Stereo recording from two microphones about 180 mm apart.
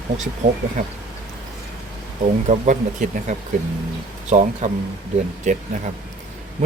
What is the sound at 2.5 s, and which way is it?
Speech, 40° right (ahead or behind).